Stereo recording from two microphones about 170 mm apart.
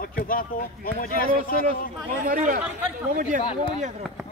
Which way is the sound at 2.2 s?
50° right (ahead or behind).